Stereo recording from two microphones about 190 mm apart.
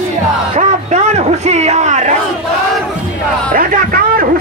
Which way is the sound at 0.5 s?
35° right (ahead or behind).